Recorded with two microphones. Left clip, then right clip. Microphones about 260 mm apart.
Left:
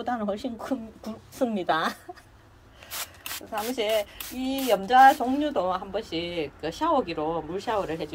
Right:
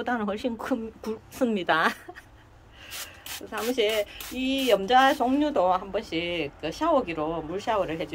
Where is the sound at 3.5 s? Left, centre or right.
Centre.